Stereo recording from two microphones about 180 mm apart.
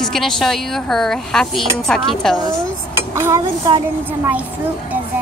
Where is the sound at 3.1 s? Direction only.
15° right (ahead or behind).